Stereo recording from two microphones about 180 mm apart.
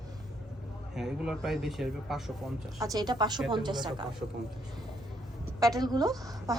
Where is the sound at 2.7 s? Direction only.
20° right (ahead or behind).